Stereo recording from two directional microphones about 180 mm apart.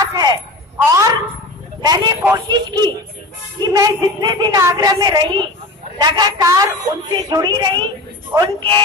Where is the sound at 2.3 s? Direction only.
25° right (ahead or behind).